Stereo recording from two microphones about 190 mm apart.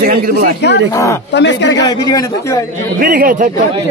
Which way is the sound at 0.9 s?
15° left (ahead or behind).